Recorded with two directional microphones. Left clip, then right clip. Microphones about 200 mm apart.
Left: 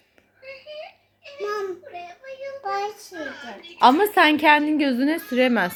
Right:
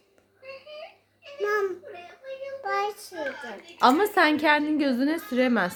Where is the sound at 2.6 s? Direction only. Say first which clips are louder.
Left 1 dB; 15° right (ahead or behind).